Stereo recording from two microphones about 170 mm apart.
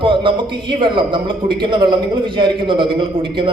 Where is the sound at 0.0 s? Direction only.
30° right (ahead or behind).